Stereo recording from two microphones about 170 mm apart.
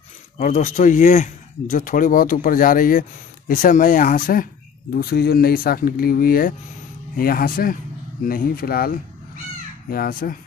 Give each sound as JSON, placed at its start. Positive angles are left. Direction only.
{"t": 0.4, "sound": "speech", "side_deg": 50}
{"t": 4.9, "sound": "speech", "side_deg": 70}